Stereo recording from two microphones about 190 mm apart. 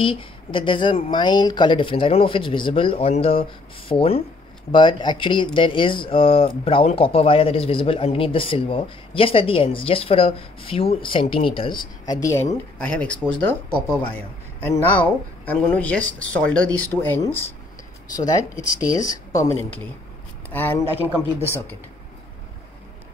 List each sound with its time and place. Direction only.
0.0 s speech: 25° left (ahead or behind); by 13.2 s 5° left (ahead or behind)
14.6 s speech: 10° left (ahead or behind)
20.4 s speech: 10° left (ahead or behind)
21.1 s speech: 15° right (ahead or behind)